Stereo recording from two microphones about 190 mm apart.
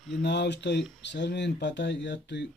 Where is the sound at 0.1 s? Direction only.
65° left (ahead or behind).